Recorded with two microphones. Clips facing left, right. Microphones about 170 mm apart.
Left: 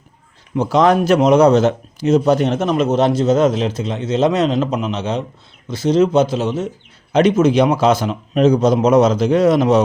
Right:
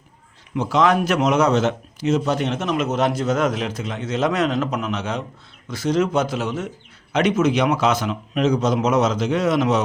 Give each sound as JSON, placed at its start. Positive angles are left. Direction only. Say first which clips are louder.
{"t": 0.5, "sound": "speech", "louder": "left 4 dB", "side_deg": 35}